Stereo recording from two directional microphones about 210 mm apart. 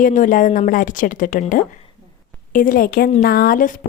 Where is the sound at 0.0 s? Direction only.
40° left (ahead or behind).